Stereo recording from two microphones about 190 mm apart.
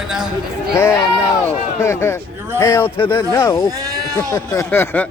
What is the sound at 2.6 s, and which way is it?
Speech, 15° left (ahead or behind).